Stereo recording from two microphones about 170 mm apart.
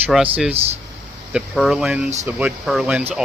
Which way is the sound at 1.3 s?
5° right (ahead or behind).